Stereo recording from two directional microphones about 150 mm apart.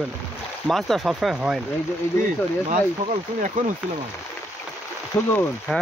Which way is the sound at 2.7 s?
60° right (ahead or behind).